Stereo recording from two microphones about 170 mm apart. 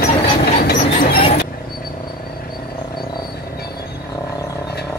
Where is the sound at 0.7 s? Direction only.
60° left (ahead or behind).